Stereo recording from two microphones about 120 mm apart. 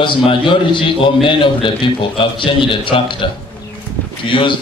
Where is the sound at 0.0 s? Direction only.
45° left (ahead or behind).